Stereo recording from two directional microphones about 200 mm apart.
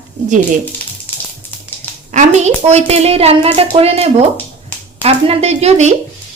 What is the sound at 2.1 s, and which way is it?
A woman's voice, 35° right (ahead or behind).